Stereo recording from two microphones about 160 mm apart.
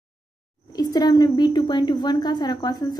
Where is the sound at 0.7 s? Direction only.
25° left (ahead or behind).